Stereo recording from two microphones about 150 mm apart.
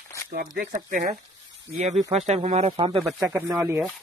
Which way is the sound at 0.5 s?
80° right.